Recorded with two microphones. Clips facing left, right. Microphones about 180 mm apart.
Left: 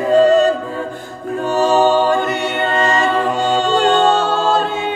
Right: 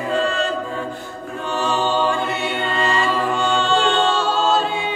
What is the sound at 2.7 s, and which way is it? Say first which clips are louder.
A capella: left 4 dB; 45° left (ahead or behind).